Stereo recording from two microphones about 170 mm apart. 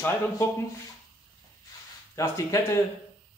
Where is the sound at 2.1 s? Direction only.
15° left (ahead or behind).